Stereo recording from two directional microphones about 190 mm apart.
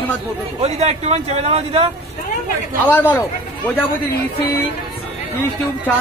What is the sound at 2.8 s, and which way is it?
Speech, 10° left (ahead or behind).